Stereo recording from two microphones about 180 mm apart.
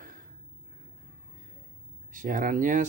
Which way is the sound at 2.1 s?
45° right (ahead or behind).